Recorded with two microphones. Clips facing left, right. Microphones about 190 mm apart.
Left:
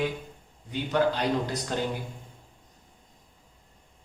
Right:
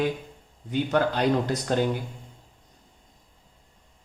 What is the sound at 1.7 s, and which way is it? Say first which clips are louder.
Speech: right 7 dB; 50° right (ahead or behind).